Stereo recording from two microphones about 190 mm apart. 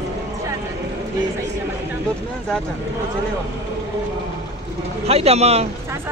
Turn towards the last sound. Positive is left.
turn(degrees=-35)  # may be behind; listen again after turning